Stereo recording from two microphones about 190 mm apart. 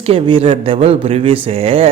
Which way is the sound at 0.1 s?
30° right (ahead or behind).